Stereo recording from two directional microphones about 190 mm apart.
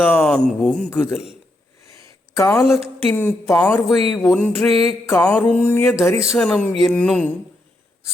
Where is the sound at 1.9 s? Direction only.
15° left (ahead or behind).